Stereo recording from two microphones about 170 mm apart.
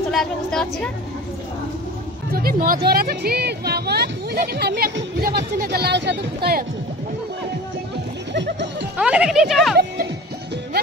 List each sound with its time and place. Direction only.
0.1 s a woman's voice: centre (ahead or behind)
2.3 s speech: 60° right (ahead or behind); by 6.6 s 75° right (ahead or behind)
8.3 s music: 90° right
8.9 s speech: 5° right (ahead or behind)